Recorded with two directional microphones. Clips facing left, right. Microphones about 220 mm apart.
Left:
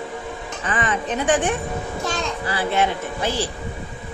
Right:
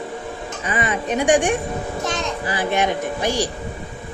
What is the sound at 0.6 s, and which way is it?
A child's voice, 10° right (ahead or behind).